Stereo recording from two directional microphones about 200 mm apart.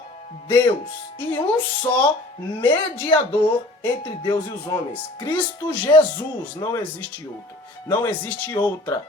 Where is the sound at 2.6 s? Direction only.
25° left (ahead or behind).